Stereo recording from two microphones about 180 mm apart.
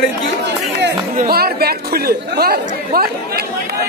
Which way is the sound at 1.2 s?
60° right (ahead or behind).